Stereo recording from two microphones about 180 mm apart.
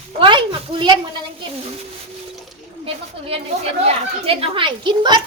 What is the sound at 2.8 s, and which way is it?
A woman's voice, 30° right (ahead or behind).